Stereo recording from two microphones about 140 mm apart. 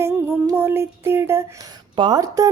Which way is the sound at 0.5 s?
15° right (ahead or behind).